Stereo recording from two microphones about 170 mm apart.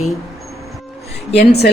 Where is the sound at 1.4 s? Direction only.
75° left (ahead or behind).